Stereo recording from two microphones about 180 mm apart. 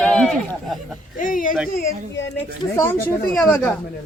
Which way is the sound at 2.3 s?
15° left (ahead or behind).